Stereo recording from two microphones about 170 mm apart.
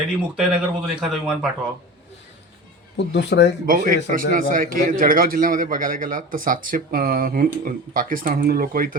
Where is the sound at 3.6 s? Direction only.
55° right (ahead or behind).